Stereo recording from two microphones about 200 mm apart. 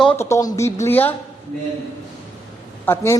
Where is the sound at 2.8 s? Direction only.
15° left (ahead or behind).